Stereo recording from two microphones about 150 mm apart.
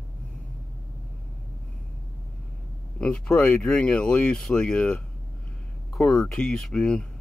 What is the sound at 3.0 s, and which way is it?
Speech, 5° left (ahead or behind).